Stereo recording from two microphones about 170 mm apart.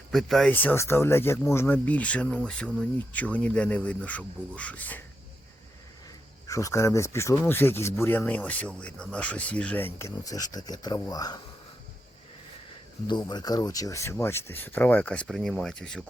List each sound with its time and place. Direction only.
0.1 s speech: centre (ahead or behind)
6.5 s speech: 20° left (ahead or behind)
13.1 s speech: 25° left (ahead or behind); by 16.0 s 5° left (ahead or behind)